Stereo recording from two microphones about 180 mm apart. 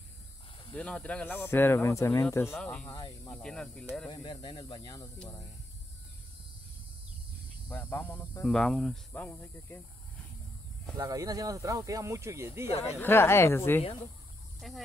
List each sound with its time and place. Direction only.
0.7 s speech: 5° left (ahead or behind)
3.4 s speech: 5° left (ahead or behind)
4.1 s speech: 25° left (ahead or behind)
7.7 s speech: 10° left (ahead or behind)
8.5 s speech: centre (ahead or behind)
11.0 s speech: 20° right (ahead or behind)
12.6 s speech: 35° left (ahead or behind)
13.0 s speech: 15° left (ahead or behind)
14.6 s speech: centre (ahead or behind)